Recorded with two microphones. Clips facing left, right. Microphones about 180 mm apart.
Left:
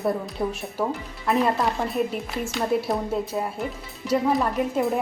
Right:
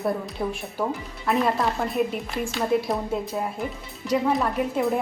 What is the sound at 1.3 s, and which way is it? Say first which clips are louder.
Speech: left 1 dB; centre (ahead or behind).